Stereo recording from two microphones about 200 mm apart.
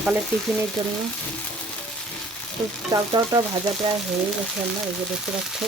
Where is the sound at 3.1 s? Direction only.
20° right (ahead or behind).